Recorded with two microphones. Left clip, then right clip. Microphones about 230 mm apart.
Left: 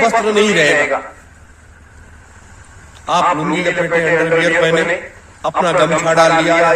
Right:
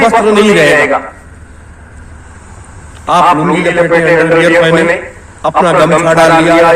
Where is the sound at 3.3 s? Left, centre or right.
Centre.